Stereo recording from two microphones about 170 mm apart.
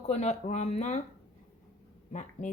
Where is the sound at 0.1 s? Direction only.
40° left (ahead or behind).